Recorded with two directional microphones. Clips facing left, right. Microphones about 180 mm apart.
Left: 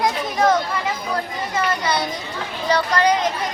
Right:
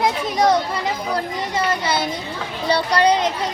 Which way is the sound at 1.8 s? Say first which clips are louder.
Right 1 dB; 25° right (ahead or behind).